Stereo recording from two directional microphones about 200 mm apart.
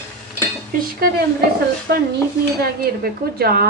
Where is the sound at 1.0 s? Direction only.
50° right (ahead or behind).